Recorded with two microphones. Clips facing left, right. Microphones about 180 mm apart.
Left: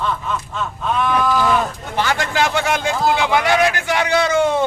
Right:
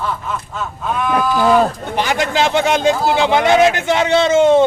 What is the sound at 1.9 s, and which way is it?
A man's voice, 20° right (ahead or behind).